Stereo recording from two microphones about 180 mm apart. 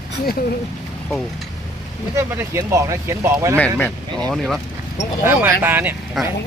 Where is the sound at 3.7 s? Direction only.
10° left (ahead or behind).